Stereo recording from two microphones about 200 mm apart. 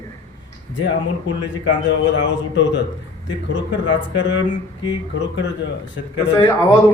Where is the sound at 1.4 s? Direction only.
65° left (ahead or behind).